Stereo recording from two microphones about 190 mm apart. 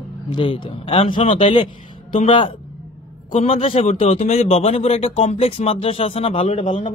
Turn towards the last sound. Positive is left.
turn(degrees=30)  # may be behind; listen again after turning